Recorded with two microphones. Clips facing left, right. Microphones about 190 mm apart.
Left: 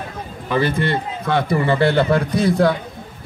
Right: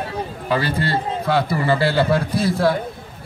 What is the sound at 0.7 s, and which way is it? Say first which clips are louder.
A man's voice: left 1 dB; 35° right (ahead or behind).